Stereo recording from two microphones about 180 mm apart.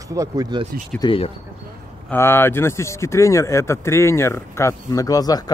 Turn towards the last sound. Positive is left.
turn(degrees=20)  # may be behind; listen again after turning